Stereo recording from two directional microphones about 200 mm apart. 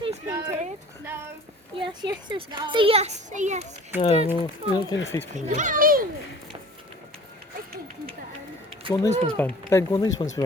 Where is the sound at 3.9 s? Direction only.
30° left (ahead or behind).